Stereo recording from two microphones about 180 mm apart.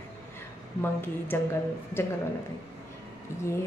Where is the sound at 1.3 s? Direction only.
10° left (ahead or behind).